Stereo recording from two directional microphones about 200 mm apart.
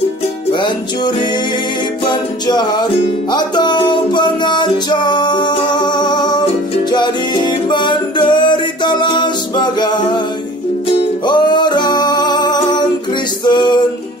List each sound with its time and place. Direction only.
0.5 s music: 20° left (ahead or behind)
13.5 s male singing: 20° left (ahead or behind)